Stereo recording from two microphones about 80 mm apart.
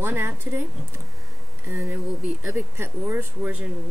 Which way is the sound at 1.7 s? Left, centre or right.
Right.